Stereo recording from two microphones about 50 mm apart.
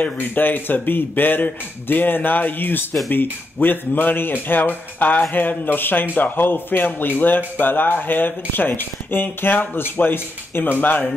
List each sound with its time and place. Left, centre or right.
0.0 s speech: left